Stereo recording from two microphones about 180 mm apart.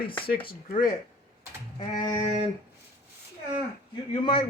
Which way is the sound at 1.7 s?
25° left (ahead or behind).